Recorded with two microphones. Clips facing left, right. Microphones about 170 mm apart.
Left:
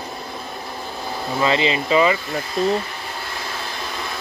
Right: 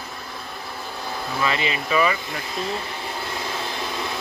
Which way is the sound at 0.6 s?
15° left (ahead or behind).